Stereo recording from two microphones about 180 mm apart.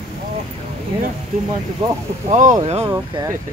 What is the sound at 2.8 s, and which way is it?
Speech, 20° right (ahead or behind).